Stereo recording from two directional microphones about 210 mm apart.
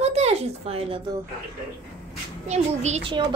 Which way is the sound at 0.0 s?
30° right (ahead or behind).